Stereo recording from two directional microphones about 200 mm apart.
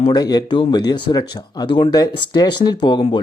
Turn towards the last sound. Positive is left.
turn(degrees=20)  # may be behind; listen again after turning